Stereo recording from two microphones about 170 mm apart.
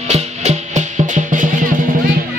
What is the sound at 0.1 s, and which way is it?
Music, 40° right (ahead or behind).